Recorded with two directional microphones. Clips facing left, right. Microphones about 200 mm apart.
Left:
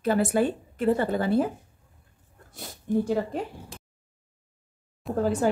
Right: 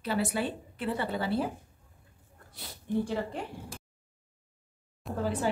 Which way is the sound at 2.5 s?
45° left (ahead or behind).